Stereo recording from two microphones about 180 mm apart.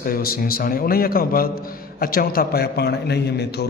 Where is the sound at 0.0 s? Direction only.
55° left (ahead or behind).